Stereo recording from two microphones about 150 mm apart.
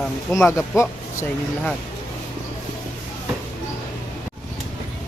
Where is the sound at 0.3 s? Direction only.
10° left (ahead or behind).